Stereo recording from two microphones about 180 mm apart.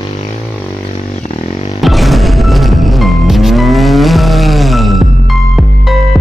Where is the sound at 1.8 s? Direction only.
Centre (ahead or behind).